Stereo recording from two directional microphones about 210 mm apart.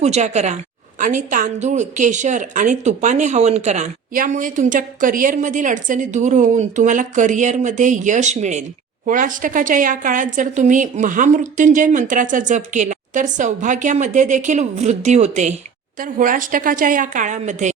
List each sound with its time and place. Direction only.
0.0 s a woman's voice: 30° right (ahead or behind)